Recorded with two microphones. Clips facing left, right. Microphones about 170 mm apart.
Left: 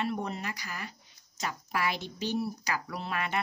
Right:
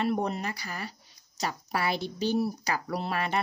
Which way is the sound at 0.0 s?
35° right (ahead or behind).